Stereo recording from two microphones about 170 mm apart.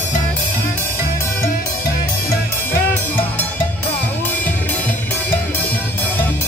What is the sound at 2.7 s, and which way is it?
Music, 10° left (ahead or behind).